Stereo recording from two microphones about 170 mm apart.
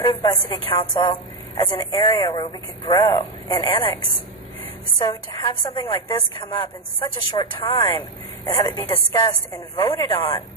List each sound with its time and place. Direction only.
0.0 s a woman's voice: 25° left (ahead or behind)